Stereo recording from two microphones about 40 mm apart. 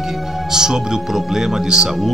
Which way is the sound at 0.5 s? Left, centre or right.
Centre.